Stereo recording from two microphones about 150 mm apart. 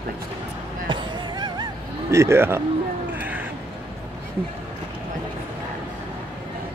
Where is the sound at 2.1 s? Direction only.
20° right (ahead or behind).